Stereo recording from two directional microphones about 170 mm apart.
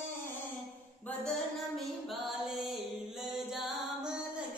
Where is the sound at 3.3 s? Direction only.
Centre (ahead or behind).